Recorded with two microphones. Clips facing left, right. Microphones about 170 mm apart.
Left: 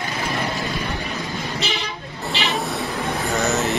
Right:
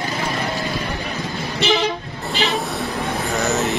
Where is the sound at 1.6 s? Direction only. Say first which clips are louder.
Right 11 dB; 65° right (ahead or behind).